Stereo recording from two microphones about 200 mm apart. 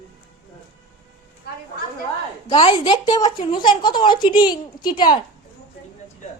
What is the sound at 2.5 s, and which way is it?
A woman's voice, 25° left (ahead or behind).